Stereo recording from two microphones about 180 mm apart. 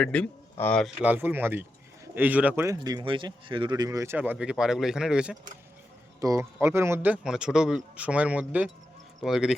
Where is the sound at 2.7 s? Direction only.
25° right (ahead or behind); by 5.4 s 5° right (ahead or behind).